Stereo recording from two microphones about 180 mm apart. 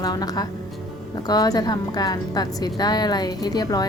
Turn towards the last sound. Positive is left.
turn(degrees=20)  # may be behind; listen again after turning